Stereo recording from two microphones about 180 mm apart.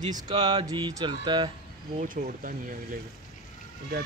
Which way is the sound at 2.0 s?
45° right (ahead or behind).